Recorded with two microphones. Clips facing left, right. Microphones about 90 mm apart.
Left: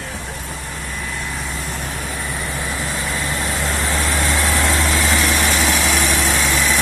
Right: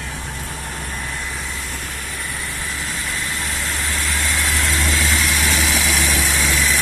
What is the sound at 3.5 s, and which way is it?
Vehicle, 55° left (ahead or behind).